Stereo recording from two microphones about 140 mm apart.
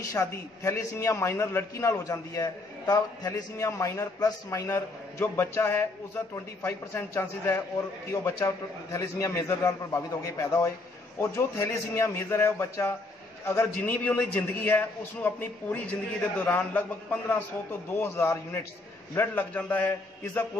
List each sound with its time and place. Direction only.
0.0 s a man's voice: 25° left (ahead or behind)